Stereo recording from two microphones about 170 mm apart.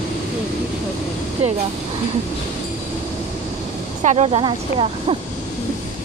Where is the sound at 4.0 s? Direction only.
40° right (ahead or behind).